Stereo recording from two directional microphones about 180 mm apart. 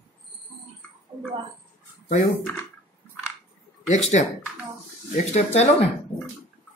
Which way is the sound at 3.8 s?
40° left (ahead or behind).